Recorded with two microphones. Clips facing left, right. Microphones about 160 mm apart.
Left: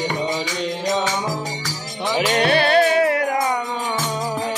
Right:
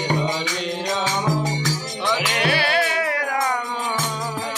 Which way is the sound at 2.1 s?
30° left (ahead or behind).